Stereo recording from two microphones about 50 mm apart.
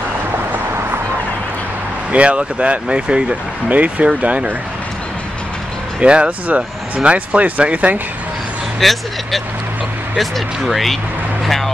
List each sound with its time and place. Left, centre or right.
2.1 s speech: right
5.9 s speech: right
8.7 s speech: centre